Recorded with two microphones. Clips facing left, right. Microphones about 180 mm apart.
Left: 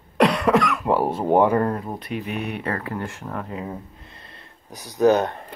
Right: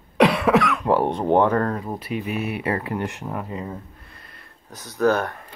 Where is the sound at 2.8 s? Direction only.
20° right (ahead or behind).